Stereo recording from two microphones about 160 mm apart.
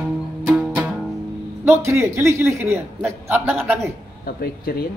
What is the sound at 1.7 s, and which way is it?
A man's voice, 15° right (ahead or behind).